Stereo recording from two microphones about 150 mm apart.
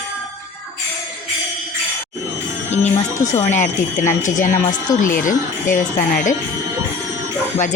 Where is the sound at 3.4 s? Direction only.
55° left (ahead or behind).